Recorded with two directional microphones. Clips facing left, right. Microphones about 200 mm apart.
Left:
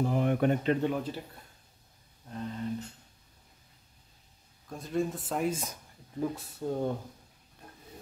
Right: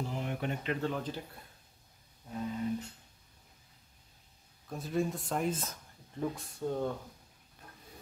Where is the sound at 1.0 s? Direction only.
5° left (ahead or behind).